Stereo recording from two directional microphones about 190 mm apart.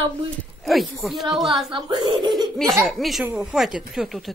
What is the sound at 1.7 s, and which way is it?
Speech, 25° right (ahead or behind).